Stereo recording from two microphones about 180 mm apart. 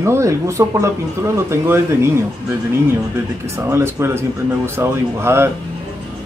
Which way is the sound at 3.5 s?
15° right (ahead or behind).